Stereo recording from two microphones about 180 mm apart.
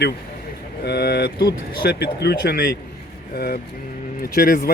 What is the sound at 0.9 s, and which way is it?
A man's voice, 65° left (ahead or behind).